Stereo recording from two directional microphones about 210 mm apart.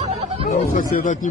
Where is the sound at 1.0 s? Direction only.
35° left (ahead or behind).